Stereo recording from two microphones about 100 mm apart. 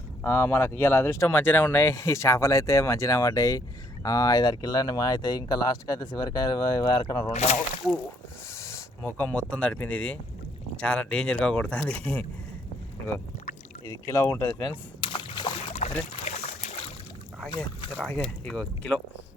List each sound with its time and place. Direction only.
0.2 s speech: 25° left (ahead or behind); by 7.3 s 45° left (ahead or behind)
7.3 s speech: 90° left
8.5 s a sound: 30° left (ahead or behind)
9.1 s speech: 15° left (ahead or behind)
13.8 s speech: 30° left (ahead or behind)
15.0 s a sound: 55° left (ahead or behind)
16.3 s boat: 90° left
17.9 s speech: 10° left (ahead or behind)